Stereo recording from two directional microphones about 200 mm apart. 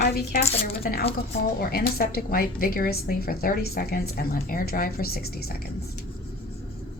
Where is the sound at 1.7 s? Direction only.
50° left (ahead or behind).